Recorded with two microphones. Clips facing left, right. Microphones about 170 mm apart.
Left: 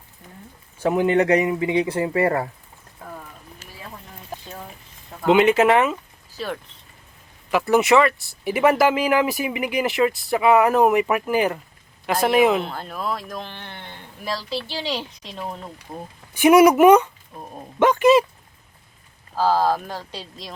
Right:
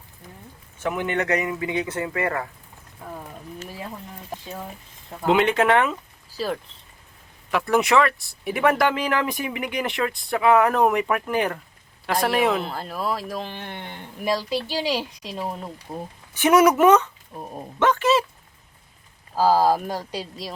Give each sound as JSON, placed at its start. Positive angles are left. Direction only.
{"t": 0.8, "sound": "speech", "side_deg": 35}
{"t": 5.2, "sound": "speech", "side_deg": 0}
{"t": 7.5, "sound": "speech", "side_deg": 5}
{"t": 16.3, "sound": "speech", "side_deg": 10}
{"t": 17.3, "sound": "speech", "side_deg": -10}
{"t": 17.7, "sound": "speech", "side_deg": 15}
{"t": 19.4, "sound": "speech", "side_deg": -10}